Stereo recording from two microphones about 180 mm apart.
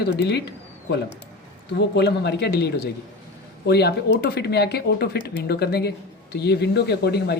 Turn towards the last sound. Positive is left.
turn(degrees=65)  # may be behind; listen again after turning